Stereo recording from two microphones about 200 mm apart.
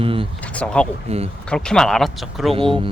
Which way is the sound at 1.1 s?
30° right (ahead or behind).